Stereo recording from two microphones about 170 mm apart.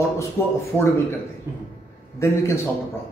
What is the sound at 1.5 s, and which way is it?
Speech, 15° right (ahead or behind).